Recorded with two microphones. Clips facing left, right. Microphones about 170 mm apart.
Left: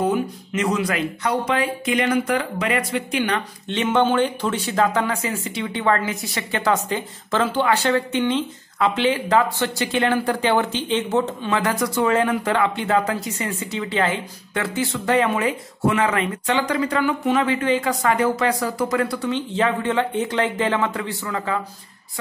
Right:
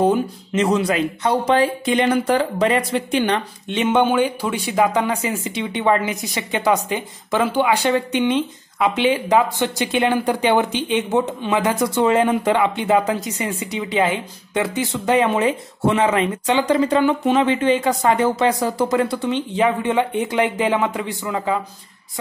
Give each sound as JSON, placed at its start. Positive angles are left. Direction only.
{"t": 0.0, "sound": "speech", "side_deg": -30}
{"t": 3.6, "sound": "speech", "side_deg": -20}